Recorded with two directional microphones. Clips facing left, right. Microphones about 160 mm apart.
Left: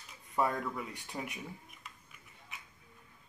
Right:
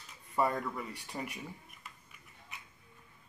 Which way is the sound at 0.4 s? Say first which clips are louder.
Right 1 dB; centre (ahead or behind).